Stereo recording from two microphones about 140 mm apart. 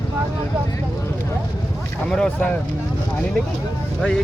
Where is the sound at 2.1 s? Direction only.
5° left (ahead or behind).